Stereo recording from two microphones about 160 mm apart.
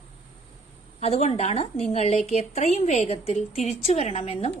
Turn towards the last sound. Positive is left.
turn(degrees=40)  # may be behind; listen again after turning